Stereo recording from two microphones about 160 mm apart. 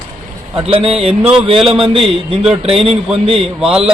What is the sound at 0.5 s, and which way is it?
A man's voice, 35° right (ahead or behind).